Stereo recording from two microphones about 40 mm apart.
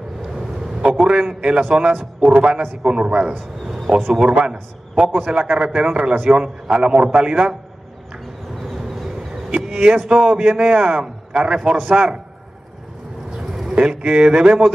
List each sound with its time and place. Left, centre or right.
0.8 s a man's voice: right
3.6 s a sound: centre
4.1 s a man's voice: centre
8.7 s vehicle: centre
9.7 s music: right
10.0 s a man's voice: right
13.3 s a sound: centre
13.7 s a man's voice: right